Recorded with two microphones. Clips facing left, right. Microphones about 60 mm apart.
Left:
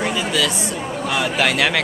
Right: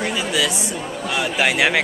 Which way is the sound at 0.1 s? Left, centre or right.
Centre.